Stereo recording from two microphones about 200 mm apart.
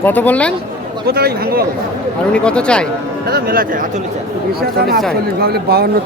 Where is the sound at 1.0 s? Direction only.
50° right (ahead or behind).